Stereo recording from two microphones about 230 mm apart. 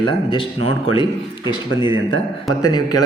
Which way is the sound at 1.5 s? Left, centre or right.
Left.